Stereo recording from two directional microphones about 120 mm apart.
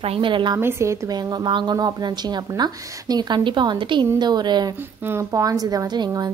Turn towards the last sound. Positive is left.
turn(degrees=-35)  # may be behind; listen again after turning